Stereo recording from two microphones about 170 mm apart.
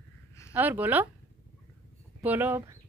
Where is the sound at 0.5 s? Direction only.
10° right (ahead or behind).